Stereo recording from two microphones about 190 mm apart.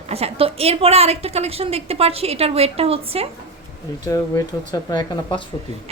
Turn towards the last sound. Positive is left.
turn(degrees=20)  # may be behind; listen again after turning